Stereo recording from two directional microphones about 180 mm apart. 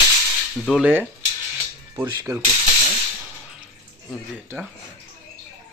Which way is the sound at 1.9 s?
15° right (ahead or behind).